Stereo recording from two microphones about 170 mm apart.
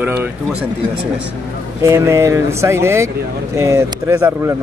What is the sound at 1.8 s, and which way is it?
Speech, 15° right (ahead or behind).